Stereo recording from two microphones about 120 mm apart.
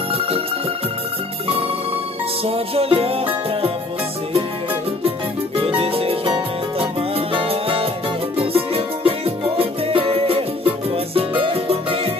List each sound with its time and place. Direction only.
2.4 s music: 55° right (ahead or behind)
5.6 s music: 50° right (ahead or behind)